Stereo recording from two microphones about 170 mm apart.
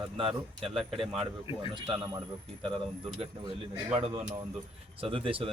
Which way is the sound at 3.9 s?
40° right (ahead or behind).